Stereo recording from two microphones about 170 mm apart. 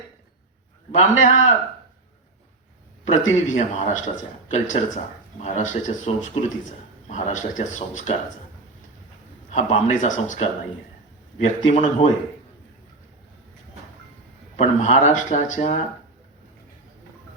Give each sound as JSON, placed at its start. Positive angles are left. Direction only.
{"t": 0.9, "sound": "speech", "side_deg": 45}
{"t": 3.1, "sound": "speech", "side_deg": 45}
{"t": 9.5, "sound": "speech", "side_deg": 45}
{"t": 14.5, "sound": "speech", "side_deg": 45}